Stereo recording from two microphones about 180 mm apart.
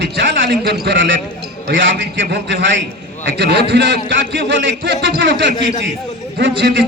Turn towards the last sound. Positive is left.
turn(degrees=-70)  # may be behind; listen again after turning